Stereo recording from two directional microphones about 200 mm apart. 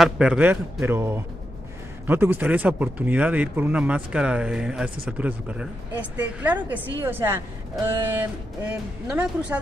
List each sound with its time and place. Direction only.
0.0 s speech: 5° right (ahead or behind)